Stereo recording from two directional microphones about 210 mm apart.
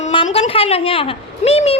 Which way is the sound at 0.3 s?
25° left (ahead or behind).